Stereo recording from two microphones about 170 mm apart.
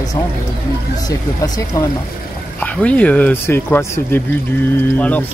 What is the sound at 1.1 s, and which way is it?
Speech, 20° left (ahead or behind).